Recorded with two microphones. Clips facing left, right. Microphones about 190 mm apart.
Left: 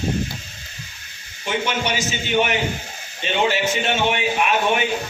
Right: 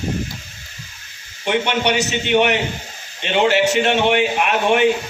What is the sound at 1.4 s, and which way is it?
A man's voice, 65° right (ahead or behind).